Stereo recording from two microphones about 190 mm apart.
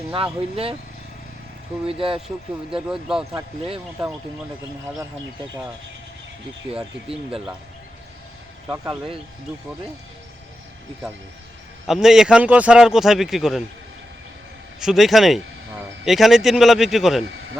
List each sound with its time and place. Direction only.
0.5 s speech: 30° right (ahead or behind)
1.9 s speech: 30° right (ahead or behind)
2.2 s speech: 5° right (ahead or behind)
6.7 s speech: 5° right (ahead or behind)
8.6 s speech: 10° right (ahead or behind)
11.9 s speech: centre (ahead or behind)
14.8 s speech: centre (ahead or behind)